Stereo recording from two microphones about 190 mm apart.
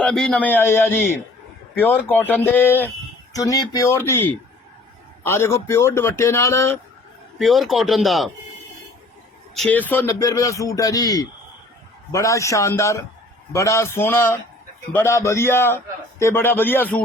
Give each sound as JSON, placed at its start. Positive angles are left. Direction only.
{"t": 0.0, "sound": "a man's voice", "side_deg": 5}
{"t": 7.3, "sound": "speech", "side_deg": 0}
{"t": 9.6, "sound": "a man's voice", "side_deg": 10}